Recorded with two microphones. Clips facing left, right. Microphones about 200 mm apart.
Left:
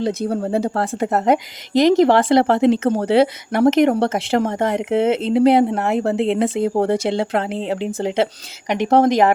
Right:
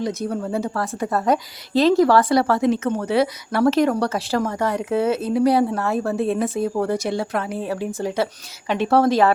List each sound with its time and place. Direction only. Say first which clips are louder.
0.0 s speech: left 4 dB; 30° left (ahead or behind)
1.7 s speech: left 2 dB; 20° left (ahead or behind)